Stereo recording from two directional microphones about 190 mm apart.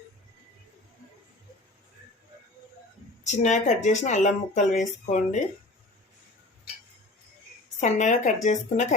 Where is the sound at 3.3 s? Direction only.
40° left (ahead or behind).